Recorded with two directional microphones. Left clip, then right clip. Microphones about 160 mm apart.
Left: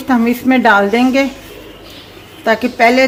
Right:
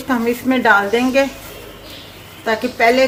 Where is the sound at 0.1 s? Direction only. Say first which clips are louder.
Left 4 dB; 50° left (ahead or behind).